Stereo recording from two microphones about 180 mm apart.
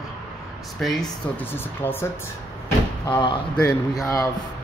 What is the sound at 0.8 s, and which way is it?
Speech, centre (ahead or behind).